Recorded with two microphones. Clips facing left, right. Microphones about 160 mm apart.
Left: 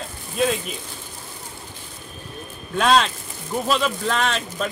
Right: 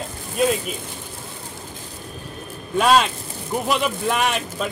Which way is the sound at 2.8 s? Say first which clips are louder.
Right 1 dB; 10° right (ahead or behind).